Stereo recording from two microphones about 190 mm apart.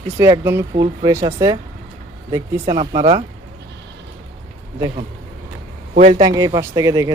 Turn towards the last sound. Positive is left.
turn(degrees=-20)  # may be behind; listen again after turning